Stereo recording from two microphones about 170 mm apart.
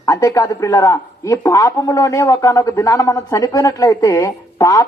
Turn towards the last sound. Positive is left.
turn(degrees=20)  # may be behind; listen again after turning